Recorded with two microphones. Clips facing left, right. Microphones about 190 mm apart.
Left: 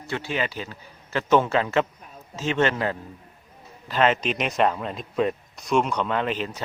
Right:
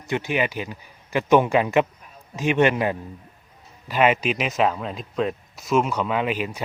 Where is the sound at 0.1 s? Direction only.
15° right (ahead or behind).